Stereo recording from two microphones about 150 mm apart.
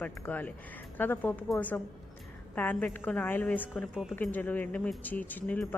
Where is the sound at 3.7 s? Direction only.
5° right (ahead or behind).